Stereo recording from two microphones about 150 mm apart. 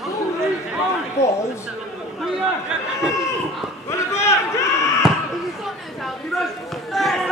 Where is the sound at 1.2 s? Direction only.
20° left (ahead or behind).